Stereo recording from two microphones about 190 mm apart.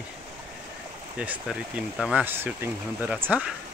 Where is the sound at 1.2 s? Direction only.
5° right (ahead or behind).